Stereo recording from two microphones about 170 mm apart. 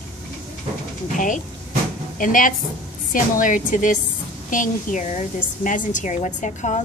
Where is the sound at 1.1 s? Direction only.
50° left (ahead or behind).